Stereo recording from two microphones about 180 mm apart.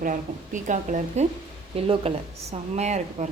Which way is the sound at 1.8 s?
30° right (ahead or behind).